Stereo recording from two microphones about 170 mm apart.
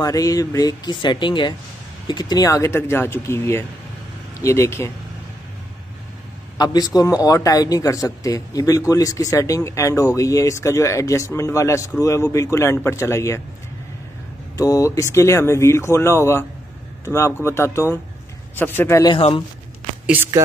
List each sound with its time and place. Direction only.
0.0 s speech: 20° left (ahead or behind)
6.6 s speech: 25° left (ahead or behind)
14.6 s speech: 20° left (ahead or behind)
19.1 s speech: 30° left (ahead or behind)
20.1 s speech: 15° right (ahead or behind)